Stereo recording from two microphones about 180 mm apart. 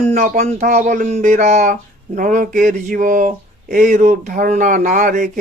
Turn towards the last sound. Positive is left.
turn(degrees=-45)  # may be behind; listen again after turning